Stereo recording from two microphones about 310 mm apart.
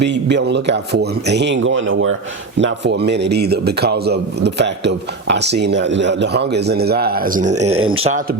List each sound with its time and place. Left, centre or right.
0.0 s a man's voice: right
7.6 s speech: right
7.9 s speech: centre